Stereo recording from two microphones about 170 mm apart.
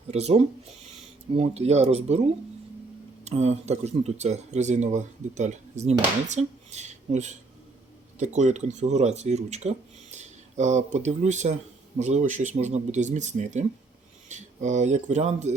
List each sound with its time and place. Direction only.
0.1 s speech: 40° right (ahead or behind)
3.2 s speech: 40° right (ahead or behind)